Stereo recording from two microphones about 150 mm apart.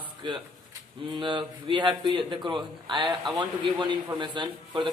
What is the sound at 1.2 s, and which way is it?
A man's voice, 30° right (ahead or behind).